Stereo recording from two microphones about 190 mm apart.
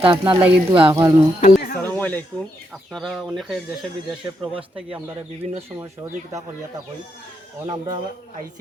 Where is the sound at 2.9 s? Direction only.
Centre (ahead or behind).